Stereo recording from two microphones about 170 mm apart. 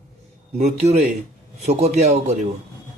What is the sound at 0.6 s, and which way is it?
A man's voice, 40° right (ahead or behind).